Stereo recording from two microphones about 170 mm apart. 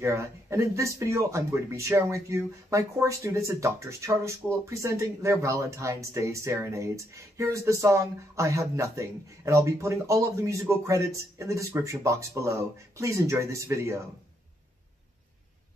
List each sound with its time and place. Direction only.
0.0 s speech: 15° right (ahead or behind)